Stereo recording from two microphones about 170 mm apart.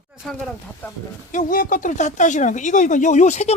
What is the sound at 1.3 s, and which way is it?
Speech, 50° left (ahead or behind).